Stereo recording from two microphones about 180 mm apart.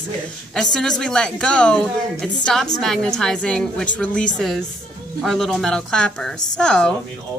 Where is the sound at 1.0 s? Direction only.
5° left (ahead or behind).